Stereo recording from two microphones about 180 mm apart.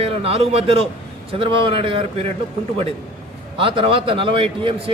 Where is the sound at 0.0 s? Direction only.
35° right (ahead or behind).